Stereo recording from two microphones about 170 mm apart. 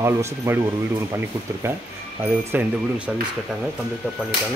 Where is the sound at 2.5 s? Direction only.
10° right (ahead or behind).